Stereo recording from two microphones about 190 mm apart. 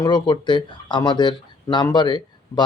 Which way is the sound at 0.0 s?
25° left (ahead or behind).